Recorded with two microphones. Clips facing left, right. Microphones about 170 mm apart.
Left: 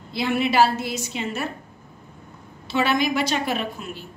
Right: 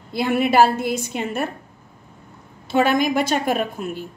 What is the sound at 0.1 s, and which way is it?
Speech, 50° right (ahead or behind).